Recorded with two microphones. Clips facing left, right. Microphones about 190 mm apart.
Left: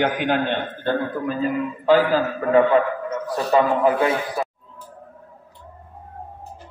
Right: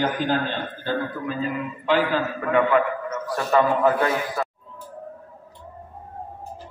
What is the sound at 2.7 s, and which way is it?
A man's voice, 25° left (ahead or behind).